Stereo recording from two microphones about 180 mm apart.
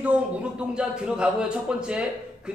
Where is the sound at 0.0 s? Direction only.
5° right (ahead or behind).